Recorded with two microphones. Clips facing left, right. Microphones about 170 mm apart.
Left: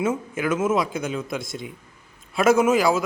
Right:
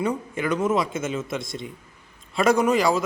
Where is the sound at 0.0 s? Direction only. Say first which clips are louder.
Left 1 dB; 5° left (ahead or behind).